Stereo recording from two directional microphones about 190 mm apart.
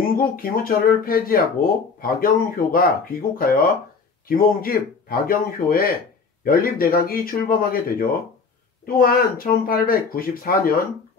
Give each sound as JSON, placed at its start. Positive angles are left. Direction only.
{"t": 0.0, "sound": "speech", "side_deg": 50}